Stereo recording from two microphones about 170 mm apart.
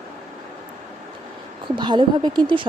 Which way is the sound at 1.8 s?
25° right (ahead or behind).